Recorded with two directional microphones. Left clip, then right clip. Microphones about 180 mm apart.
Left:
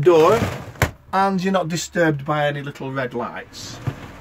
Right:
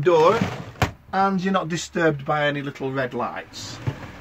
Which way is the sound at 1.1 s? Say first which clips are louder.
Left 2 dB; 60° left (ahead or behind).